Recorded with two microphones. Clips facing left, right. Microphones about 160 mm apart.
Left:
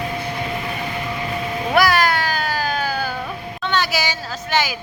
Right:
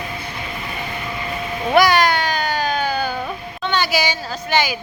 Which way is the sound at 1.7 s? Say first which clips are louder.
Right 2 dB; centre (ahead or behind).